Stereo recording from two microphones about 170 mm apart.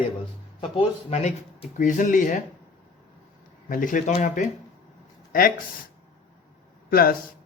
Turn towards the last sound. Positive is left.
turn(degrees=60)  # may be behind; listen again after turning